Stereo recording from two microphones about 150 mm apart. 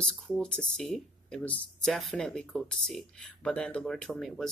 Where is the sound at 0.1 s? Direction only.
5° left (ahead or behind).